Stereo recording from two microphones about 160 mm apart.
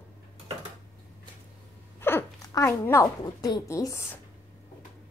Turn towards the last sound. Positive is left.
turn(degrees=20)  # may be behind; listen again after turning